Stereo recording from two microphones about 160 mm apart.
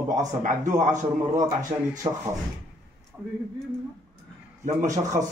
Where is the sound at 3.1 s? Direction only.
10° right (ahead or behind).